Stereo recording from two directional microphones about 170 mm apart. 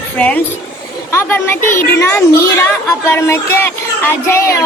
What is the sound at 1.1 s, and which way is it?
A woman's voice, 15° left (ahead or behind).